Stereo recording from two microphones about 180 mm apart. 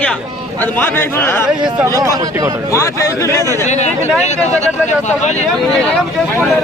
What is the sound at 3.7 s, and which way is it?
Speech, 40° left (ahead or behind).